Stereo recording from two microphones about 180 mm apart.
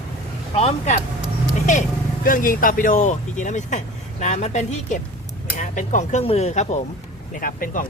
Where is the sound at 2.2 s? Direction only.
50° left (ahead or behind).